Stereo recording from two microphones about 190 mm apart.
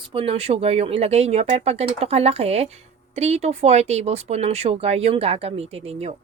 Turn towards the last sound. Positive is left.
turn(degrees=-30)  # may be behind; listen again after turning